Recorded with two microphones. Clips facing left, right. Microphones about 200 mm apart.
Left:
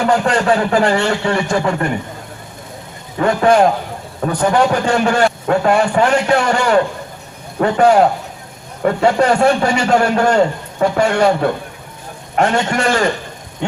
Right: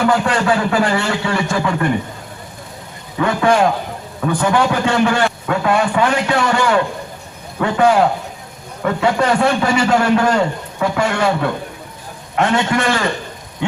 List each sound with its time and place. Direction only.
0.0 s a man's voice: 30° left (ahead or behind)
3.2 s a man's voice: 35° left (ahead or behind)